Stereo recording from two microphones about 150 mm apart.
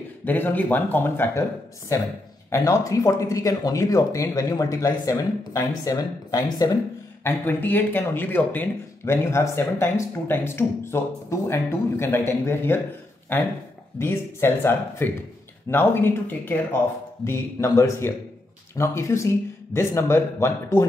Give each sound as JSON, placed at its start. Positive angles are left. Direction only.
{"t": 0.2, "sound": "speech", "side_deg": 10}
{"t": 7.2, "sound": "speech", "side_deg": 10}
{"t": 13.9, "sound": "speech", "side_deg": 15}